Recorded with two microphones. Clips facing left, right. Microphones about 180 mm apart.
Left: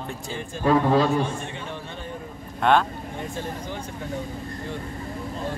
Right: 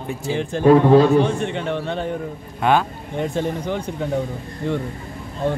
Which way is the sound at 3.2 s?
70° right (ahead or behind).